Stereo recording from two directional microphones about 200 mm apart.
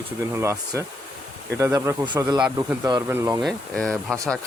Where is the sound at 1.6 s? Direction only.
15° right (ahead or behind).